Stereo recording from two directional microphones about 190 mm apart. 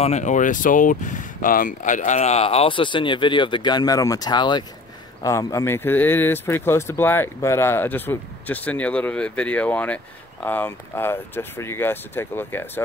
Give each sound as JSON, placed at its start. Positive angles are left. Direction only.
{"t": 0.0, "sound": "speech", "side_deg": 40}